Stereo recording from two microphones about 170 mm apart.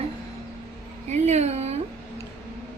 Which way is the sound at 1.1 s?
40° right (ahead or behind).